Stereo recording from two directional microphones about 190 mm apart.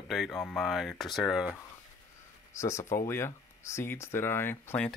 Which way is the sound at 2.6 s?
15° left (ahead or behind).